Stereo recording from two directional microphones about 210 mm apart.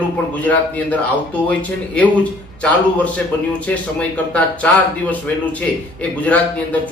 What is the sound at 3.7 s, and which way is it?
Speech, 5° left (ahead or behind).